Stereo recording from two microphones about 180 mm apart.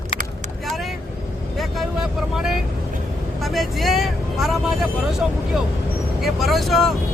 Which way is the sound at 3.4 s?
Centre (ahead or behind).